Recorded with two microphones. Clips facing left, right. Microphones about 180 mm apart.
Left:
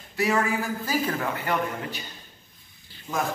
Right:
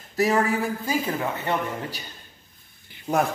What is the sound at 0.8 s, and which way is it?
Speech, 25° right (ahead or behind).